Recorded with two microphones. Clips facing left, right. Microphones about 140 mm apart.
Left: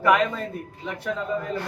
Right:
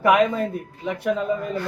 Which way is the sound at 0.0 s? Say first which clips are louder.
Right 3 dB; 15° right (ahead or behind).